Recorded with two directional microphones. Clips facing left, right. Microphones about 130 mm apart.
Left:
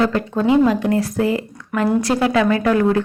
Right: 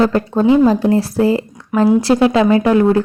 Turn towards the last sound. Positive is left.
turn(degrees=-25)  # may be behind; listen again after turning